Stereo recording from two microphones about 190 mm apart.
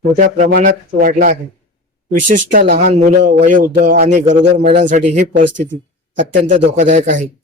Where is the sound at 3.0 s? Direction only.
40° right (ahead or behind).